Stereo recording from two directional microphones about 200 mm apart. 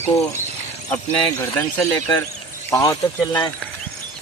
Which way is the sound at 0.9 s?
10° left (ahead or behind).